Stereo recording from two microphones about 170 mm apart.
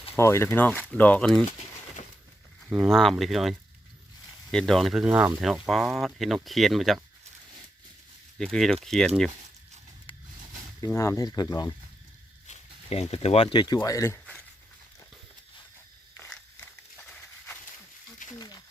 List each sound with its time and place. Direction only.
0.2 s speech: 15° left (ahead or behind)
1.5 s pigeon: 40° left (ahead or behind)
2.6 s speech: centre (ahead or behind)
4.5 s speech: 5° left (ahead or behind)
8.4 s speech: 5° left (ahead or behind)
10.8 s speech: 15° left (ahead or behind)
12.5 s speech: 35° left (ahead or behind); by 14.2 s 20° left (ahead or behind)
16.1 s walk: 10° left (ahead or behind)
18.3 s a sound: 25° left (ahead or behind)